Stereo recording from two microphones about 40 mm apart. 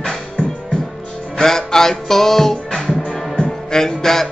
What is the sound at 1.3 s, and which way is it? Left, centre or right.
Music, centre.